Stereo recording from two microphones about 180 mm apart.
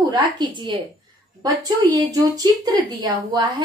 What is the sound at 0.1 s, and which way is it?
A woman's voice, 25° right (ahead or behind).